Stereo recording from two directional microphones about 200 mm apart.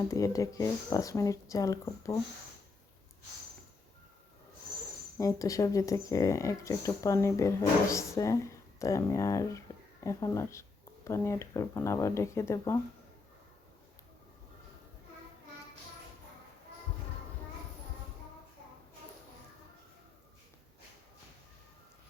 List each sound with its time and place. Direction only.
0.1 s speech: 15° left (ahead or behind)
5.1 s speech: 15° left (ahead or behind)